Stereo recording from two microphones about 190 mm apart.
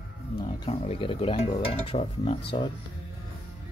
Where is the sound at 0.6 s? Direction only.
30° left (ahead or behind).